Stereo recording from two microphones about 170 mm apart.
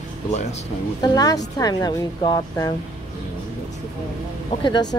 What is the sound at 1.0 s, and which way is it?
Speech, 20° left (ahead or behind).